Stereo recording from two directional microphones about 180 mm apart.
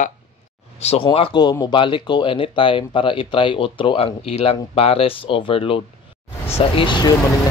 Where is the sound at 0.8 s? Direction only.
30° left (ahead or behind).